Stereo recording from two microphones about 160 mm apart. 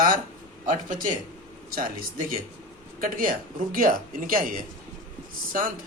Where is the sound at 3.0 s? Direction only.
60° right (ahead or behind).